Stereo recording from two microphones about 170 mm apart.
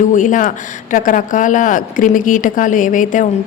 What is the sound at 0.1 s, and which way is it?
Speech, 50° left (ahead or behind).